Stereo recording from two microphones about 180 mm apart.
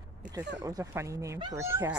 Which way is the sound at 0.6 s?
20° right (ahead or behind).